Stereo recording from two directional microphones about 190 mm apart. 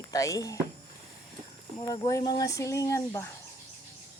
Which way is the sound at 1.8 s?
20° left (ahead or behind).